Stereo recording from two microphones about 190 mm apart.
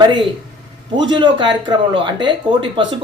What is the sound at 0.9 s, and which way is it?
Speech, 25° right (ahead or behind).